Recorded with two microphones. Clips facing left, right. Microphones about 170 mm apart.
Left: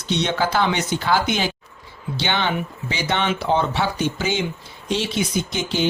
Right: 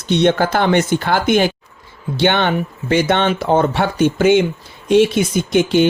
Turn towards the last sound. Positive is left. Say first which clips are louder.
# right 9 dB
turn(degrees=-55)  # may be behind; listen again after turning